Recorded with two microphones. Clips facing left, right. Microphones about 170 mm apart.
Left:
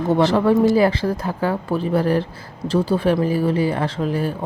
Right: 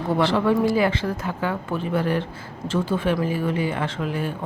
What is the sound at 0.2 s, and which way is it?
Speech, 40° left (ahead or behind).